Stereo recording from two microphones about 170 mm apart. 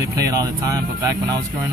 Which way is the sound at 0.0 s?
20° right (ahead or behind).